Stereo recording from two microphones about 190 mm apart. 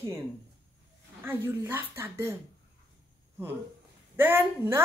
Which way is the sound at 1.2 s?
15° right (ahead or behind).